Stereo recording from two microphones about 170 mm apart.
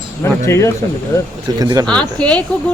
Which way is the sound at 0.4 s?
15° left (ahead or behind).